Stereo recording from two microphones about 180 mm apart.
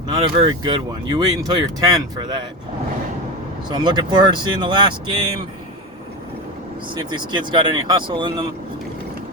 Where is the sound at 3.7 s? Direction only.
25° right (ahead or behind).